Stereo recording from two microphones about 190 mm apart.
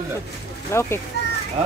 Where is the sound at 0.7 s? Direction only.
15° left (ahead or behind).